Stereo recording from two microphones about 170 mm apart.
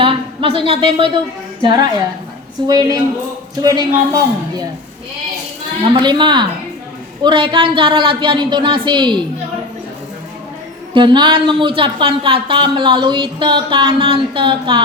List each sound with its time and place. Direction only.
0.0 s a woman's voice: 30° right (ahead or behind)
5.8 s speech: 30° right (ahead or behind)
10.9 s speech: 25° right (ahead or behind)